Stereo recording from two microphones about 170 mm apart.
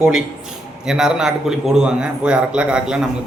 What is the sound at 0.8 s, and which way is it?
A man's voice, 5° right (ahead or behind).